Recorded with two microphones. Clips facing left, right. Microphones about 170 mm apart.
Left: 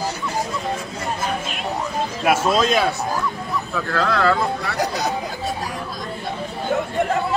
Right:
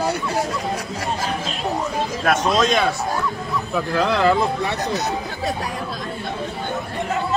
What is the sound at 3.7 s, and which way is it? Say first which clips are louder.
Speech: right 2 dB; 15° right (ahead or behind).